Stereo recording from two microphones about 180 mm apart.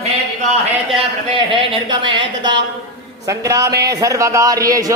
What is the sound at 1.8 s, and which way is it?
A man's voice, 25° right (ahead or behind).